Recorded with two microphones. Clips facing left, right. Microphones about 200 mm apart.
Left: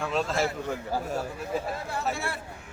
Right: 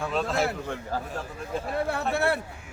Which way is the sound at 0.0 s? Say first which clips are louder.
Right 1 dB; centre (ahead or behind).